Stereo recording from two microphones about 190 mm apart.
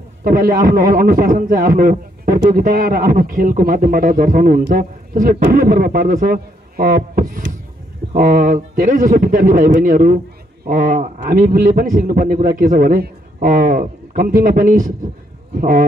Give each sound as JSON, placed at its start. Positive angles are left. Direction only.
{"t": 0.2, "sound": "a man's voice", "side_deg": -50}